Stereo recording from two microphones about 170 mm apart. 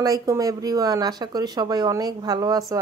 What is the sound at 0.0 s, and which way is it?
A woman's voice, 20° right (ahead or behind).